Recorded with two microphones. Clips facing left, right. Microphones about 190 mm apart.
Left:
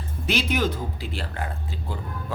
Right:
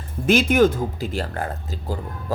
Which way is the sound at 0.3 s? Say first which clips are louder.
Right 8 dB; 50° right (ahead or behind).